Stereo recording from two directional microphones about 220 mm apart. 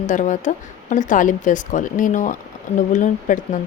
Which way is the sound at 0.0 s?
35° left (ahead or behind).